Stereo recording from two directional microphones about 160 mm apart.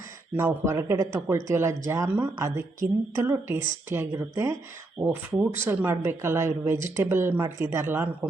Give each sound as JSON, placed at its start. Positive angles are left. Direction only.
{"t": 0.3, "sound": "speech", "side_deg": -15}